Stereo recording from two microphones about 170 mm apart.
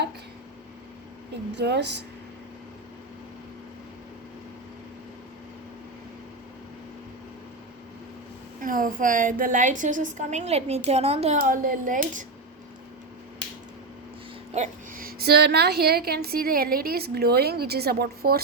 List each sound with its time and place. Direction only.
1.5 s a woman's voice: 85° right
8.6 s a woman's voice: 50° right (ahead or behind)
11.3 s a woman's voice: 55° right (ahead or behind)
14.5 s a woman's voice: 50° right (ahead or behind); by 18.3 s 65° right (ahead or behind)